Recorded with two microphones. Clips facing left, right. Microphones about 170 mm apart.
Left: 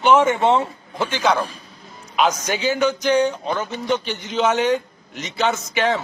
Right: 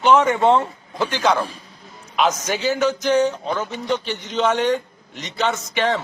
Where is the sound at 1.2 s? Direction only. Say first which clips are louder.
Even; centre (ahead or behind).